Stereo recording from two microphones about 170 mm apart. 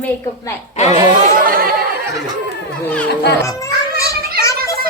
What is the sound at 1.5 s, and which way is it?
Chatter, 60° right (ahead or behind).